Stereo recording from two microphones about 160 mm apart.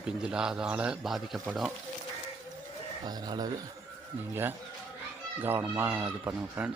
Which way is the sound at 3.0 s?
25° right (ahead or behind).